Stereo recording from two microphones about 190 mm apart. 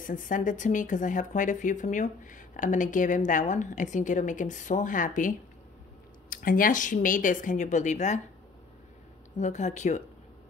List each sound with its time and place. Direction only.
0.0 s speech: 45° left (ahead or behind)
6.3 s speech: 50° left (ahead or behind)
9.4 s speech: 40° left (ahead or behind)